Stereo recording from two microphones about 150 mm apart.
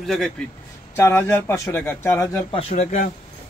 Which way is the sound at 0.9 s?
15° left (ahead or behind).